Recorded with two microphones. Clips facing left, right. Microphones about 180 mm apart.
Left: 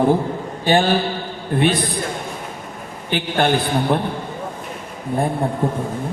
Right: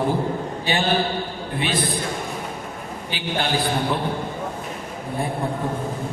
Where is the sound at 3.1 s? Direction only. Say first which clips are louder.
Left 6 dB; 55° left (ahead or behind).